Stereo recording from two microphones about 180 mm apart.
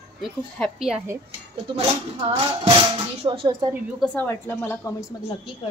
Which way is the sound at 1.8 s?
30° right (ahead or behind).